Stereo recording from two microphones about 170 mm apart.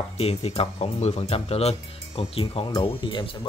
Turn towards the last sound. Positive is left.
turn(degrees=30)  # may be behind; listen again after turning